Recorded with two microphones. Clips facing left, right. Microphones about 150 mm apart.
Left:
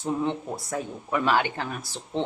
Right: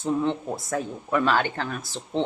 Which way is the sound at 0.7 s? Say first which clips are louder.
Right 3 dB; 15° left (ahead or behind).